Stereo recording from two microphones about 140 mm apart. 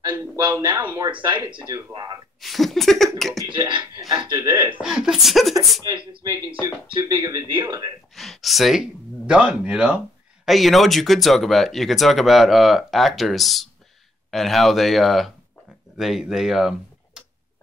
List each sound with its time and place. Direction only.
0.2 s speech: 30° right (ahead or behind)
2.4 s speech: centre (ahead or behind)
3.4 s speech: 35° right (ahead or behind)
4.6 s speech: 5° right (ahead or behind)
5.9 s speech: 35° right (ahead or behind)
8.1 s speech: centre (ahead or behind)